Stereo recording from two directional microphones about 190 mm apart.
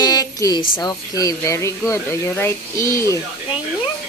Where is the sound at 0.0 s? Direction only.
20° left (ahead or behind).